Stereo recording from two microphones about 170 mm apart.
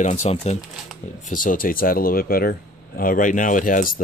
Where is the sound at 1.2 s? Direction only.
55° left (ahead or behind).